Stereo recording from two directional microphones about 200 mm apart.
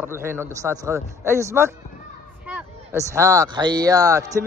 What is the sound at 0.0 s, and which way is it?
A man's voice, 10° right (ahead or behind).